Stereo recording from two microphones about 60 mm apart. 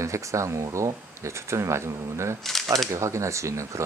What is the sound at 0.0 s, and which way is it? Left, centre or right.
Speech, right.